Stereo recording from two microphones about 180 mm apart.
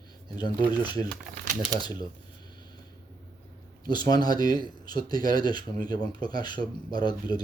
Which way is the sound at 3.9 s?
20° left (ahead or behind).